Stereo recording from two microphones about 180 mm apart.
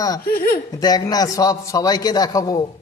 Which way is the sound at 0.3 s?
55° left (ahead or behind).